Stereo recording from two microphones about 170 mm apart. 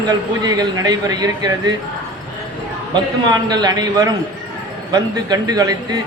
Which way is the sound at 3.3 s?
25° right (ahead or behind).